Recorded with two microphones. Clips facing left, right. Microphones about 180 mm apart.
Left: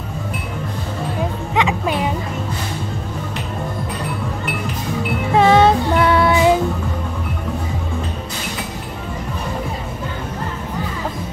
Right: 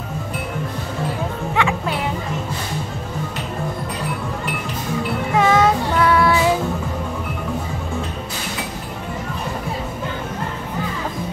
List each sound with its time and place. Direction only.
1.5 s music: 20° left (ahead or behind)
5.3 s music: 30° left (ahead or behind)